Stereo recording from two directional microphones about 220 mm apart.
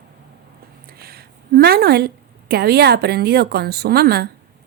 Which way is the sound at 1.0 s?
45° right (ahead or behind).